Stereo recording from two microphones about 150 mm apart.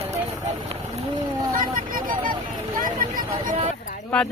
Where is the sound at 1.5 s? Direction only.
65° right (ahead or behind).